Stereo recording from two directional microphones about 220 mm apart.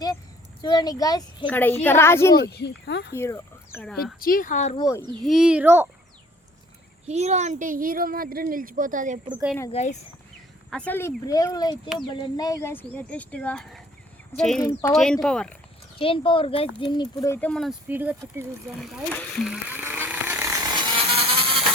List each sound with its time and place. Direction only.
0.6 s speech: 20° left (ahead or behind)
2.4 s speech: 50° left (ahead or behind)
3.2 s speech: 10° left (ahead or behind)
4.2 s speech: 40° left (ahead or behind)
4.8 s speech: 15° left (ahead or behind)
5.2 s speech: centre (ahead or behind)
7.1 s speech: 30° right (ahead or behind)
9.7 s speech: 30° left (ahead or behind)
10.7 s speech: 5° left (ahead or behind)
16.0 s speech: 25° left (ahead or behind); by 18.8 s 10° right (ahead or behind)
18.8 s a sound: centre (ahead or behind); by 21.6 s 25° right (ahead or behind)